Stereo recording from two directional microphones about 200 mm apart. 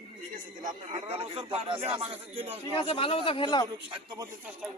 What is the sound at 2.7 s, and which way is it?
Speech, 25° left (ahead or behind).